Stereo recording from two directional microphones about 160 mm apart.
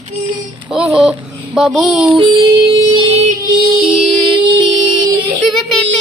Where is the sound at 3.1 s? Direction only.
40° right (ahead or behind).